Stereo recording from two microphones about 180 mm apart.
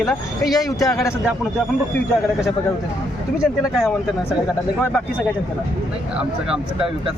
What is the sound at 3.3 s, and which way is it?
Speech, centre (ahead or behind).